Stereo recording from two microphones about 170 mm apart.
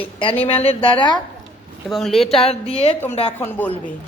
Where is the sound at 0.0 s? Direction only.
30° left (ahead or behind).